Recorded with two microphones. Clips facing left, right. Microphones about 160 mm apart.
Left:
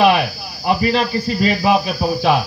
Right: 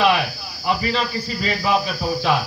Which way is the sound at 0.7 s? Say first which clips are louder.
Left 5 dB; 15° left (ahead or behind).